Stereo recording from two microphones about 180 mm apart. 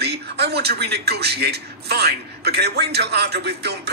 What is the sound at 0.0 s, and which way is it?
A man's voice, 65° right (ahead or behind).